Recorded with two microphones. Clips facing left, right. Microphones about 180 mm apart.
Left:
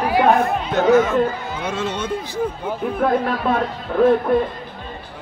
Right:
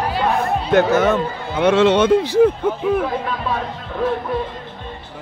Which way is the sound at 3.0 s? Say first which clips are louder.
Left 4 dB; 55° left (ahead or behind).